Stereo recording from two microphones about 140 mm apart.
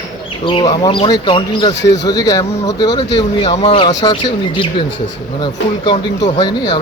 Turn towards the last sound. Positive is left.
turn(degrees=35)  # may be behind; listen again after turning